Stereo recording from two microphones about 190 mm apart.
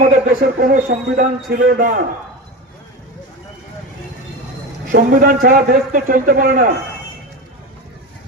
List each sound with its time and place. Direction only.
0.0 s a man's voice: 45° right (ahead or behind)
1.5 s a man's voice: 55° right (ahead or behind)
4.9 s a man's voice: 50° right (ahead or behind)